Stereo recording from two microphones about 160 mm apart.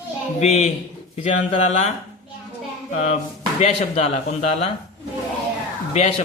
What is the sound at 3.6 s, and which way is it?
A man's voice, 45° left (ahead or behind).